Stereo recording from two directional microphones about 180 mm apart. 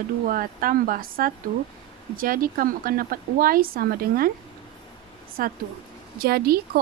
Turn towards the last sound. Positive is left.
turn(degrees=-60)  # may be behind; listen again after turning